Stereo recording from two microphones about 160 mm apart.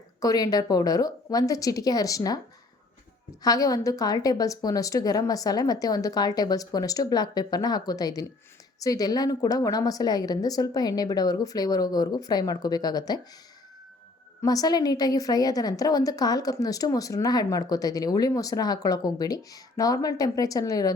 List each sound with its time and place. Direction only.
0.2 s a woman's voice: 20° left (ahead or behind)
3.4 s a woman's voice: 20° left (ahead or behind)
14.4 s a woman's voice: 25° left (ahead or behind)